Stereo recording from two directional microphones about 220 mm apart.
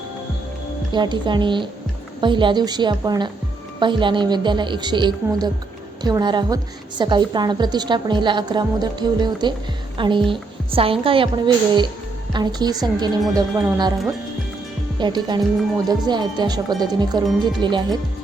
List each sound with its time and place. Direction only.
0.9 s a woman's voice: 20° right (ahead or behind)
14.9 s a woman's voice: 20° right (ahead or behind)